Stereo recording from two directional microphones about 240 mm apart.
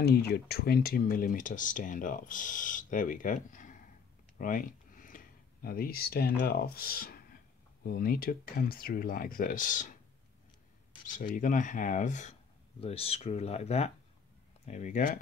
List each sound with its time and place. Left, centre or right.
0.0 s speech: left
11.3 s speech: left